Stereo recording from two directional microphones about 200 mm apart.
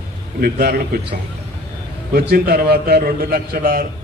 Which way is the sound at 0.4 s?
50° right (ahead or behind).